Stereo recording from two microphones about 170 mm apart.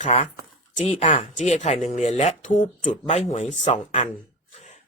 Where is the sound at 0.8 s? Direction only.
35° left (ahead or behind).